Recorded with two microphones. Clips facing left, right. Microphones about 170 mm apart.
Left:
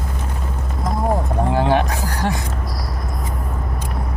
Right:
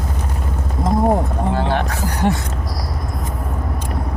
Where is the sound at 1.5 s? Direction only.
15° left (ahead or behind).